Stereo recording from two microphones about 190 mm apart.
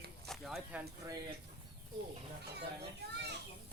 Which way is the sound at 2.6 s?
60° right (ahead or behind).